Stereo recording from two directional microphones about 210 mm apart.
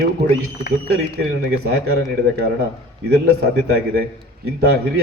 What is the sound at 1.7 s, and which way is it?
A man's voice, 50° right (ahead or behind).